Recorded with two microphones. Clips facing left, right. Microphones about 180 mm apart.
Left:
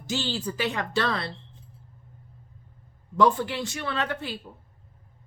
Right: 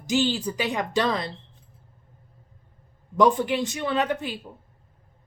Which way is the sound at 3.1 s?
20° right (ahead or behind).